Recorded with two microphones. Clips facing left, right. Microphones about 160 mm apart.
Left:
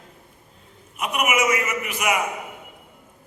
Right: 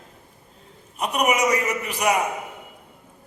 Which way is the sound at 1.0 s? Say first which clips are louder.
Right 1 dB; 35° right (ahead or behind).